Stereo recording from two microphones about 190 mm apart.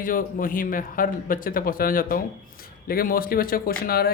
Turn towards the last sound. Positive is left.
turn(degrees=50)  # may be behind; listen again after turning